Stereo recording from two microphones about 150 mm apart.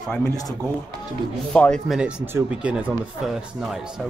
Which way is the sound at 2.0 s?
5° right (ahead or behind).